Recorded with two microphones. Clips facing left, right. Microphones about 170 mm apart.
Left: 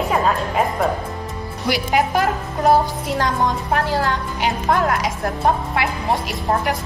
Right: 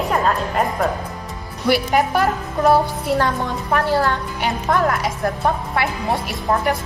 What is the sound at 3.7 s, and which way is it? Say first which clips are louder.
A woman's voice: right 2 dB; 45° right (ahead or behind).